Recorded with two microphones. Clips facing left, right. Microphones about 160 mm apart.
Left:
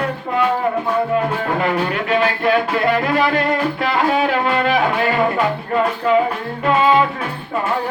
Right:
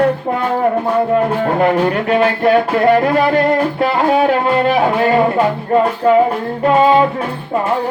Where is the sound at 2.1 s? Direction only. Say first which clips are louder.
Right 4 dB; 35° right (ahead or behind).